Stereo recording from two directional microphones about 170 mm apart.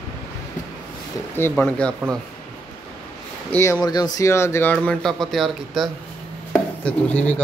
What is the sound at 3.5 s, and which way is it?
A man's voice, 15° left (ahead or behind).